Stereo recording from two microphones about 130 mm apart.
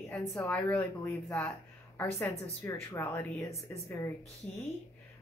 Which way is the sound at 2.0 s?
10° left (ahead or behind).